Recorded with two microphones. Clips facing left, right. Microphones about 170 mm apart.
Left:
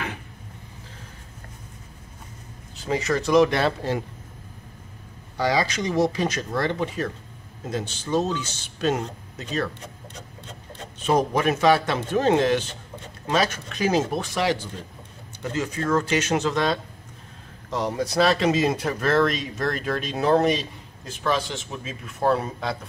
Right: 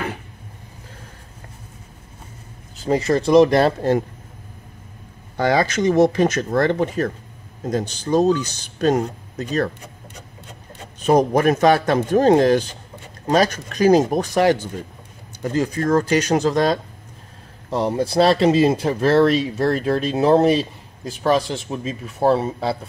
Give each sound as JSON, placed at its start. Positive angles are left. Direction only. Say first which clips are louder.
{"t": 2.8, "sound": "speech", "louder": "right 6 dB", "side_deg": -35}
{"t": 5.4, "sound": "speech", "louder": "right 5 dB", "side_deg": -55}
{"t": 11.1, "sound": "speech", "louder": "right 6 dB", "side_deg": -45}